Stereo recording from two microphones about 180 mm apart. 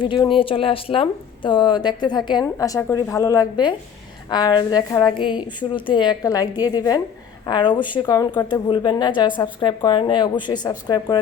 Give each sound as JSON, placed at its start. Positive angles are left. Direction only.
{"t": 0.0, "sound": "a woman's voice", "side_deg": 25}